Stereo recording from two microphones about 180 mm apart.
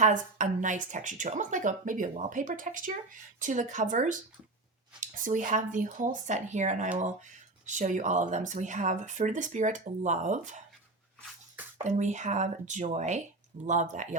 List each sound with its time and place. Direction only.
0.0 s speech: 45° right (ahead or behind)
11.8 s speech: 40° right (ahead or behind)